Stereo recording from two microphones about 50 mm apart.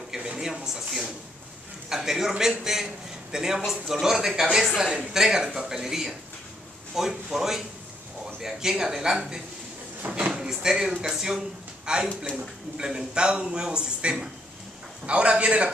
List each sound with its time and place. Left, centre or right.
0.1 s a sound: centre
1.9 s a man's voice: centre
10.1 s drawer open or close: right
10.5 s a man's voice: centre